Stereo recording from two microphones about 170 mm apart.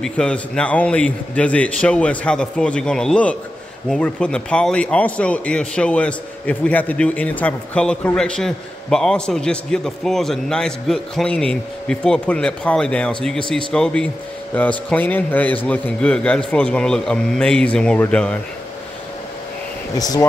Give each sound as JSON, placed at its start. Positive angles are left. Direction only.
{"t": 0.0, "sound": "a man's voice", "side_deg": 5}
{"t": 20.0, "sound": "speech", "side_deg": 20}